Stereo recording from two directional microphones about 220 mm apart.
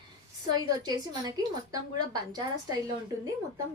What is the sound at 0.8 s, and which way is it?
Speech, 20° right (ahead or behind).